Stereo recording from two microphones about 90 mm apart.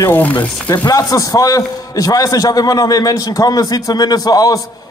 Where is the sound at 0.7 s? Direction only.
45° left (ahead or behind).